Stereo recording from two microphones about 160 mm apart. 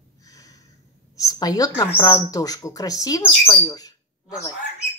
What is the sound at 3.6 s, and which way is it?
Bird, 25° left (ahead or behind).